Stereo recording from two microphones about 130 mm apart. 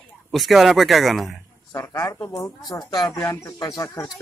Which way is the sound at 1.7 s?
20° left (ahead or behind).